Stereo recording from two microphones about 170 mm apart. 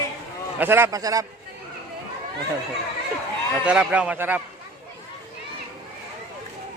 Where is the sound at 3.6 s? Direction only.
5° right (ahead or behind).